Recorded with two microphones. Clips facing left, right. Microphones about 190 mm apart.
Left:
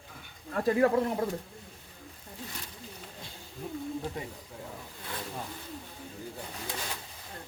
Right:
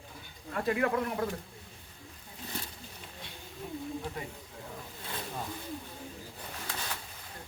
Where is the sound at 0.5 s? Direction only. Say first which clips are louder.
Left 5 dB; 35° left (ahead or behind).